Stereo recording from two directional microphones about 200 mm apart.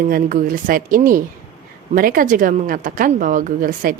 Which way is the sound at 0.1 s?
45° right (ahead or behind).